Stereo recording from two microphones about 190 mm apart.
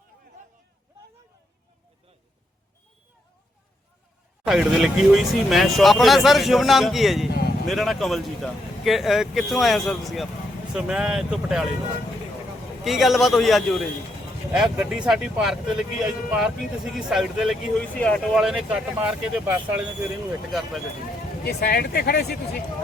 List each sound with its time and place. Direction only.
4.4 s speech: centre (ahead or behind)
7.3 s speech: 55° left (ahead or behind)
7.7 s speech: centre (ahead or behind)
12.8 s speech: centre (ahead or behind)
21.4 s speech: 55° left (ahead or behind)